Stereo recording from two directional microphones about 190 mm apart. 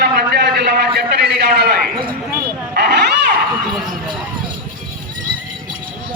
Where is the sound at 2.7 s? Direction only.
60° right (ahead or behind).